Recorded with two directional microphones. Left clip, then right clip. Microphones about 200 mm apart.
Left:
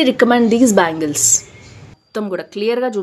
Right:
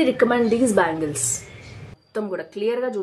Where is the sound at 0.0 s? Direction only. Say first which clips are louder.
Left 5 dB; 45° left (ahead or behind).